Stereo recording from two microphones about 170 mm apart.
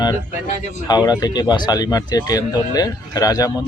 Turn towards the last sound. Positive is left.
turn(degrees=20)  # may be behind; listen again after turning